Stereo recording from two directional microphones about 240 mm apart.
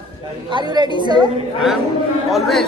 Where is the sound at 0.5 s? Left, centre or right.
Centre.